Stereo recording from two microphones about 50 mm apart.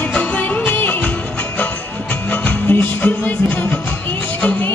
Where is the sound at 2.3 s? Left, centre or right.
Left.